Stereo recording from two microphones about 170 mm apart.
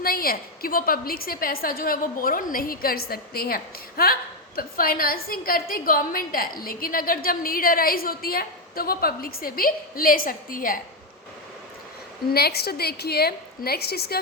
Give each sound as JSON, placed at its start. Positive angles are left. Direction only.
{"t": 0.0, "sound": "a woman's voice", "side_deg": 60}
{"t": 12.3, "sound": "a woman's voice", "side_deg": 70}